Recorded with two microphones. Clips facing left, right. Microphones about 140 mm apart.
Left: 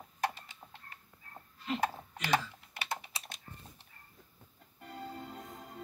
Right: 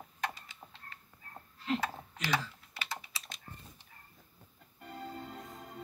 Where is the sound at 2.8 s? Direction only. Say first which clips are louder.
Left 4 dB; 60° left (ahead or behind).